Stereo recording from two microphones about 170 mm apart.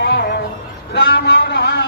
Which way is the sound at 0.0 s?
85° left.